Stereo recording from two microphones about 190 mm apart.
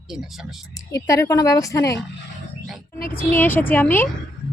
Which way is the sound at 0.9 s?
15° left (ahead or behind).